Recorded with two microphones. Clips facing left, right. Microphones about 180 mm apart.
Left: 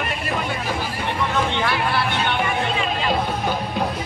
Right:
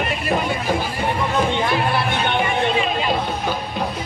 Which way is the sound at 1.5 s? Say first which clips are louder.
Right 2 dB; 20° right (ahead or behind).